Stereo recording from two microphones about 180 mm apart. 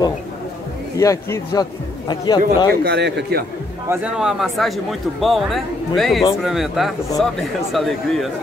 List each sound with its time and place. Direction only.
0.9 s a man's voice: 20° left (ahead or behind)
2.8 s speech: 70° right (ahead or behind)
3.9 s speech: 5° right (ahead or behind)